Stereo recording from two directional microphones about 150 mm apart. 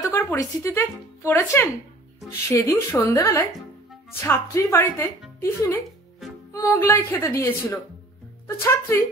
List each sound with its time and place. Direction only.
0.0 s a woman's voice: 15° left (ahead or behind)